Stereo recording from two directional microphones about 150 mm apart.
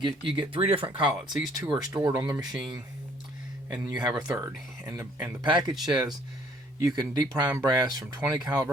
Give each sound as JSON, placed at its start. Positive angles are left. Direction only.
{"t": 0.0, "sound": "speech", "side_deg": -35}
{"t": 5.5, "sound": "speech", "side_deg": -30}